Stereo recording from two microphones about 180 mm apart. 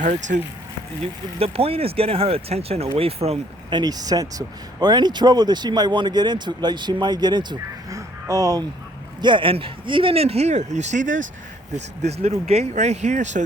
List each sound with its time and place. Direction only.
0.0 s speech: 45° right (ahead or behind)
1.4 s speech: 35° right (ahead or behind)
12.2 s speech: 35° right (ahead or behind)